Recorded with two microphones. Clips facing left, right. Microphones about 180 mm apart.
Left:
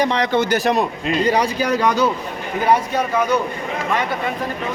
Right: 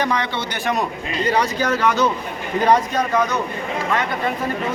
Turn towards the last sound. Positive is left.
turn(degrees=10)  # may be behind; listen again after turning